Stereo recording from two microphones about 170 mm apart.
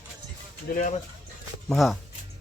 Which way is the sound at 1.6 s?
Centre (ahead or behind).